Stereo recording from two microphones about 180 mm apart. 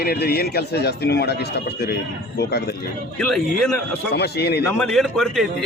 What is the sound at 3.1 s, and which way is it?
Speech, 5° left (ahead or behind).